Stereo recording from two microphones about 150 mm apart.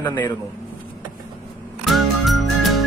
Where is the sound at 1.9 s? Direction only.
Centre (ahead or behind).